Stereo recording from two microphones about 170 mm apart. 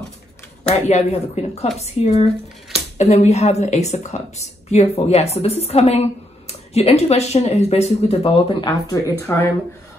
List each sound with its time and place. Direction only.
0.7 s speech: 40° left (ahead or behind)
8.2 s speech: 25° left (ahead or behind)